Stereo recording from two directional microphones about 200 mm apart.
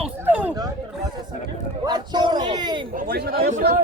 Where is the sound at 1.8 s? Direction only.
20° right (ahead or behind).